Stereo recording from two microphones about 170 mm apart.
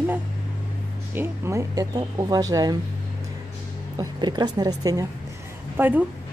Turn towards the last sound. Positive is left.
turn(degrees=-10)  # may be behind; listen again after turning